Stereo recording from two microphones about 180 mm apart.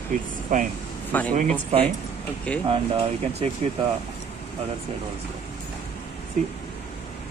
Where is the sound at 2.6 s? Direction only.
35° right (ahead or behind).